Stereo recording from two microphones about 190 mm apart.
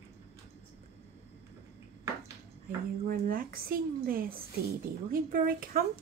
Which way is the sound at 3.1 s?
50° right (ahead or behind).